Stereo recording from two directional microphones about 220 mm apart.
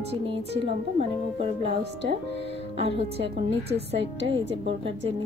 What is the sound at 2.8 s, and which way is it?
Speech, 25° right (ahead or behind).